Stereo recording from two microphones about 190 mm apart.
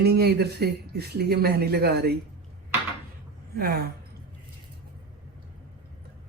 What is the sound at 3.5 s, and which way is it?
Speech, 55° right (ahead or behind).